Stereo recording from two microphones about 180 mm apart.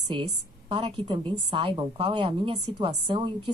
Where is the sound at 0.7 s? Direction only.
30° right (ahead or behind).